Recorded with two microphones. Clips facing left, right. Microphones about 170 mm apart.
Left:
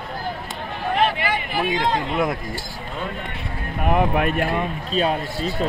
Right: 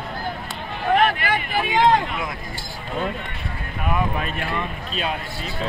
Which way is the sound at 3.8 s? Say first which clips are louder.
Left 5 dB; 55° left (ahead or behind).